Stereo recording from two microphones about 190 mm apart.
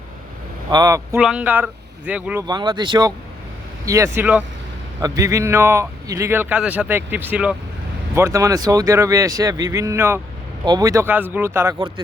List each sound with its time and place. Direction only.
0.7 s speech: 20° right (ahead or behind)
1.2 s speech: 5° right (ahead or behind)
2.5 s speech: 20° right (ahead or behind)